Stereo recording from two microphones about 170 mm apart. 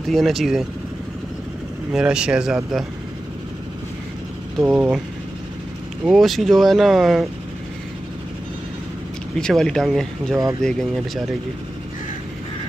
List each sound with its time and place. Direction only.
0.1 s speech: centre (ahead or behind)
1.9 s speech: 5° right (ahead or behind)
4.6 s speech: 5° right (ahead or behind)
6.0 s speech: centre (ahead or behind)
9.4 s speech: 5° left (ahead or behind)